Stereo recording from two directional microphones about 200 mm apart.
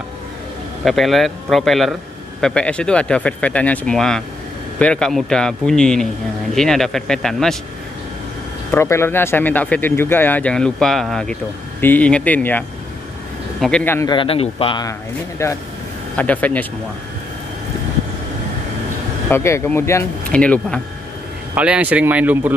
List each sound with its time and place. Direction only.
0.8 s speech: centre (ahead or behind)
8.7 s speech: 10° left (ahead or behind)
14.1 s speech: 30° left (ahead or behind); by 16.6 s 10° left (ahead or behind)
19.3 s speech: 10° left (ahead or behind)
21.5 s speech: 5° right (ahead or behind)